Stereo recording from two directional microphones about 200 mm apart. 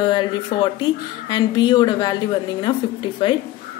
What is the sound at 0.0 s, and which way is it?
Speech, 25° left (ahead or behind).